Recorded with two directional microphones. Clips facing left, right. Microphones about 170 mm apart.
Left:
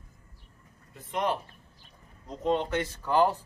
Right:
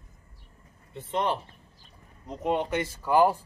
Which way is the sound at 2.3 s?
10° right (ahead or behind).